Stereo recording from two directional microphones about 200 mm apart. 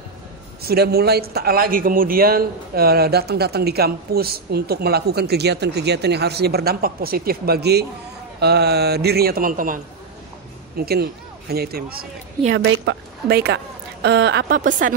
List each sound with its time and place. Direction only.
0.6 s a man's voice: 50° right (ahead or behind)
10.8 s speech: 50° right (ahead or behind)
12.4 s a woman's voice: 65° right (ahead or behind)
14.6 s speech: 40° right (ahead or behind)